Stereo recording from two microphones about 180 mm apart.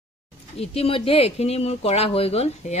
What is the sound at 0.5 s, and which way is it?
Speech, 35° left (ahead or behind).